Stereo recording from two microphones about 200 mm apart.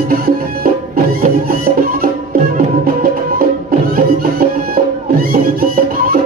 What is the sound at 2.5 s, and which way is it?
Music, 45° right (ahead or behind).